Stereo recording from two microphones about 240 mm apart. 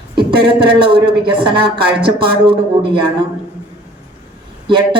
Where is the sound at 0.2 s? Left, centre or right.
Right.